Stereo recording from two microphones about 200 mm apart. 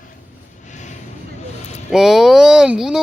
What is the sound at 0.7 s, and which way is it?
Vehicle, 35° left (ahead or behind).